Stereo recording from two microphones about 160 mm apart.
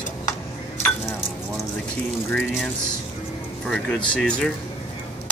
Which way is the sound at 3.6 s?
5° left (ahead or behind).